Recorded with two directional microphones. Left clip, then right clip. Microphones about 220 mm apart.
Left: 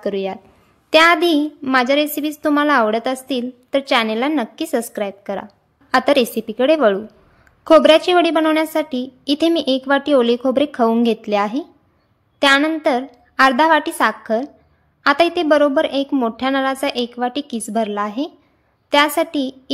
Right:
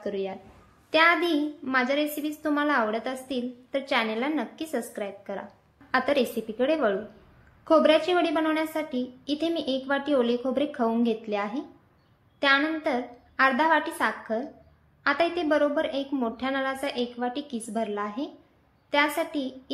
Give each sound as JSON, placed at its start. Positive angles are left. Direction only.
{"t": 0.0, "sound": "a woman's voice", "side_deg": 50}